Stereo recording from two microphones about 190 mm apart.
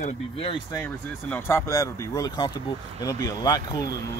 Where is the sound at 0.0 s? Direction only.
30° left (ahead or behind).